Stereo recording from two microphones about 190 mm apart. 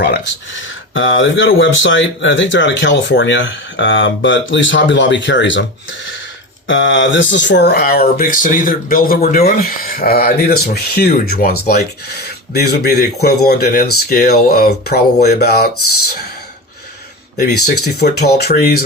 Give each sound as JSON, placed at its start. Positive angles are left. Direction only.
{"t": 0.0, "sound": "speech", "side_deg": 70}
{"t": 6.7, "sound": "speech", "side_deg": 80}
{"t": 17.3, "sound": "speech", "side_deg": 55}